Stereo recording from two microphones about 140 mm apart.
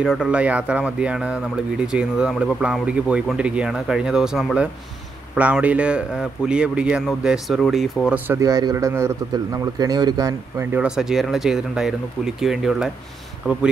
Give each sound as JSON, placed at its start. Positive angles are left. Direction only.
{"t": 0.0, "sound": "speech", "side_deg": -5}
{"t": 8.4, "sound": "speech", "side_deg": -25}
{"t": 10.7, "sound": "speech", "side_deg": -5}